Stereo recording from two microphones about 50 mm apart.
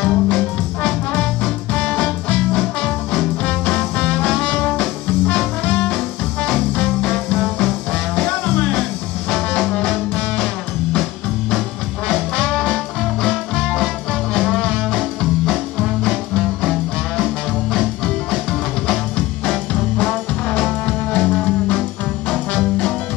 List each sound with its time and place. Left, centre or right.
0.0 s music: centre
1.1 s swing music: centre
4.0 s music: centre
4.5 s music: left
7.4 s music: centre
8.3 s music: left
9.8 s music: centre
20.8 s music: left
22.6 s music: centre